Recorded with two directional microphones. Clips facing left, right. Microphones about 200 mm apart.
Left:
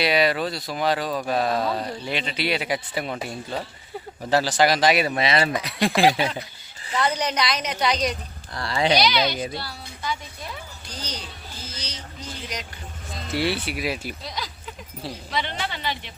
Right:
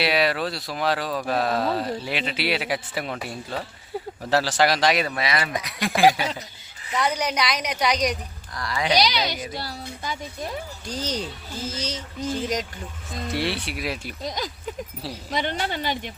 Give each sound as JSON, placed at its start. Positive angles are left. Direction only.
{"t": 0.0, "sound": "speech", "side_deg": 0}
{"t": 5.1, "sound": "speech", "side_deg": 25}
{"t": 6.9, "sound": "a woman's voice", "side_deg": -10}
{"t": 8.5, "sound": "speech", "side_deg": 30}
{"t": 9.6, "sound": "speech", "side_deg": -45}
{"t": 13.3, "sound": "speech", "side_deg": 0}
{"t": 14.3, "sound": "speech", "side_deg": -45}